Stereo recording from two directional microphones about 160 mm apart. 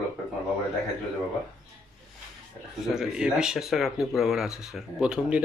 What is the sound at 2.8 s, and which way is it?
Speech, 5° right (ahead or behind).